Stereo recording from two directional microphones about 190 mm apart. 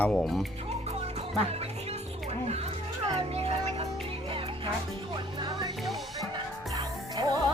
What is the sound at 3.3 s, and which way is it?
Music, 30° right (ahead or behind).